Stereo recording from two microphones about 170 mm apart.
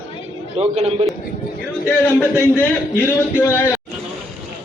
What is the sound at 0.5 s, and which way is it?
Speech, 35° right (ahead or behind).